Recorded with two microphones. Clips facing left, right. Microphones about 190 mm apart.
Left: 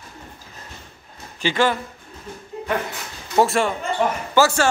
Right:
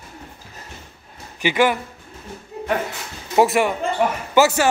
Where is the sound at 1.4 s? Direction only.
15° right (ahead or behind).